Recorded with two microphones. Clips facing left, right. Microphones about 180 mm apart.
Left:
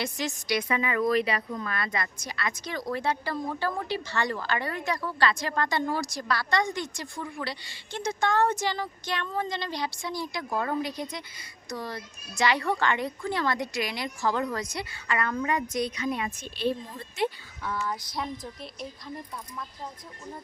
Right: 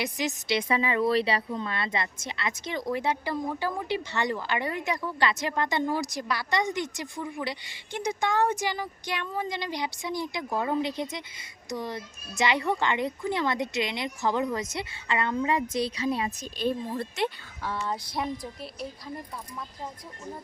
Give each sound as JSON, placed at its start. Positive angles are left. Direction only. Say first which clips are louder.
{"t": 0.0, "sound": "speech", "louder": "right 1 dB", "side_deg": -20}
{"t": 16.9, "sound": "speech", "louder": "right 2 dB", "side_deg": -65}
{"t": 17.7, "sound": "speech", "louder": "even", "side_deg": -30}